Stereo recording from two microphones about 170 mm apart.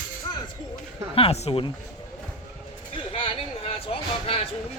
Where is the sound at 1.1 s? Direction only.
35° left (ahead or behind).